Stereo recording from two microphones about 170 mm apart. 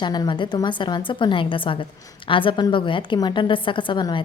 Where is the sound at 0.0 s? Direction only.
25° left (ahead or behind).